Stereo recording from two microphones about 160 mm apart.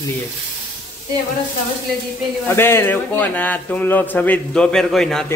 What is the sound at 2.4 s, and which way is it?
Speech, 15° left (ahead or behind).